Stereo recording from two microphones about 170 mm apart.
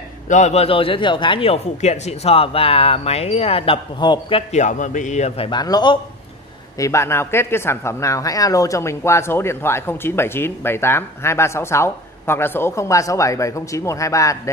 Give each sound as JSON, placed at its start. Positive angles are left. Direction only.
{"t": 0.3, "sound": "speech", "side_deg": 40}
{"t": 5.5, "sound": "a man's voice", "side_deg": 25}